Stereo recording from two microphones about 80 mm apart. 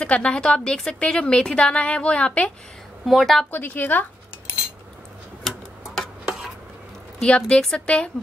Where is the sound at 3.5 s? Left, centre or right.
Left.